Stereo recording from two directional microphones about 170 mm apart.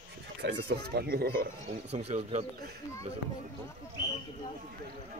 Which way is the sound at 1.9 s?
40° right (ahead or behind).